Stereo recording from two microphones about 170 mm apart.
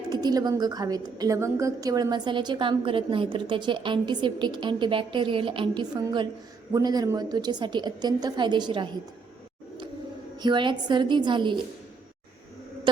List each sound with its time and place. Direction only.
0.1 s a woman's voice: 25° right (ahead or behind)
10.3 s a woman's voice: 25° right (ahead or behind)